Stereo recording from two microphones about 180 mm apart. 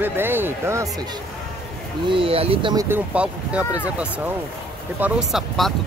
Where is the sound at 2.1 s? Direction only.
30° right (ahead or behind).